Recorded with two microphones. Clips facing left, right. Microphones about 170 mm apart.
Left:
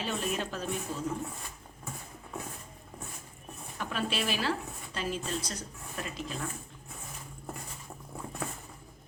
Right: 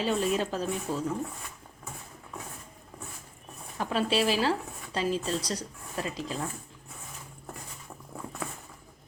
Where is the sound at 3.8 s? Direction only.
35° right (ahead or behind).